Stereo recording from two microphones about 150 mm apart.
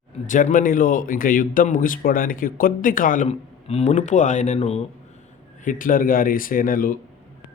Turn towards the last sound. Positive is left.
turn(degrees=70)  # may be behind; listen again after turning